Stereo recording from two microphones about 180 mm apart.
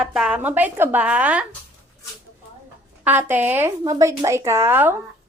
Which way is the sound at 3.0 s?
10° right (ahead or behind).